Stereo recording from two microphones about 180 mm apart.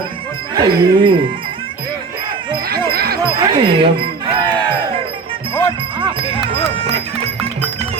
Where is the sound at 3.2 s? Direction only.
30° right (ahead or behind).